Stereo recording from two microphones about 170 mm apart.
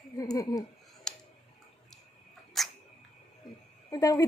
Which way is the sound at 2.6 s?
Centre (ahead or behind).